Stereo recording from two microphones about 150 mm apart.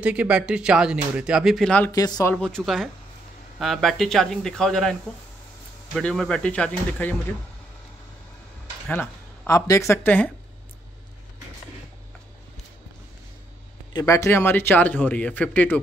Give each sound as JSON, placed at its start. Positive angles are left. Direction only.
{"t": 0.0, "sound": "speech", "side_deg": -10}
{"t": 1.9, "sound": "speech", "side_deg": 25}
{"t": 2.3, "sound": "speech", "side_deg": 5}
{"t": 5.9, "sound": "speech", "side_deg": 5}
{"t": 8.8, "sound": "a woman's voice", "side_deg": 10}
{"t": 13.9, "sound": "speech", "side_deg": 20}